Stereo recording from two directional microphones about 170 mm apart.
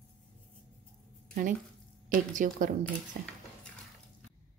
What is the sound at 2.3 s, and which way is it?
Speech, 50° right (ahead or behind).